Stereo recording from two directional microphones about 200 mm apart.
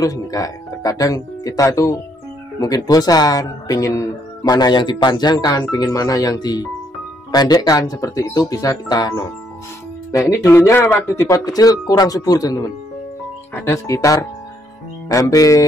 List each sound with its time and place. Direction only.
0.0 s speech: 15° left (ahead or behind)